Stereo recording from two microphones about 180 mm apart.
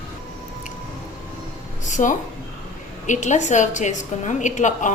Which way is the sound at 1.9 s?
45° left (ahead or behind).